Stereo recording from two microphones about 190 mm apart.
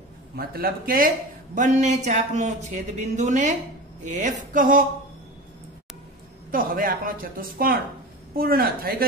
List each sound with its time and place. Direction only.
0.4 s a woman's voice: 50° right (ahead or behind)
6.5 s a woman's voice: 50° right (ahead or behind)